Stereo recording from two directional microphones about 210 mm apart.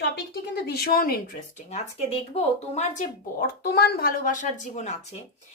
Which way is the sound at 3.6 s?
50° left (ahead or behind).